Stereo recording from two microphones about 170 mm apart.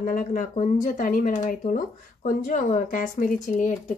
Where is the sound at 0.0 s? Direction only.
55° left (ahead or behind).